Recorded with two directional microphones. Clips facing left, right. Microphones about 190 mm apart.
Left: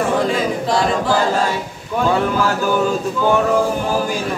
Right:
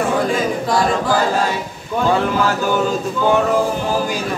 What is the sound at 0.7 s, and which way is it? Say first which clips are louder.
Music: even; 25° left (ahead or behind).